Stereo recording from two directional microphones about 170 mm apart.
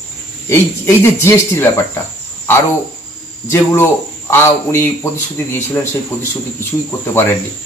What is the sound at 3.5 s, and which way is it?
Speech, 15° left (ahead or behind).